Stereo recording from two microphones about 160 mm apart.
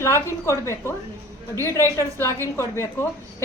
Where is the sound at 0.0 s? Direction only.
20° left (ahead or behind).